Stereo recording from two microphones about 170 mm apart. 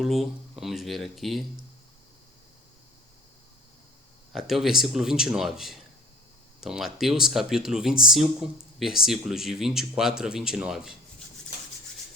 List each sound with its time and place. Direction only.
0.0 s speech: centre (ahead or behind)
4.3 s speech: centre (ahead or behind)